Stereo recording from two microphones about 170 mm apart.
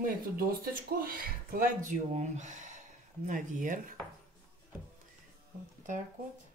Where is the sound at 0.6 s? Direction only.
60° right (ahead or behind).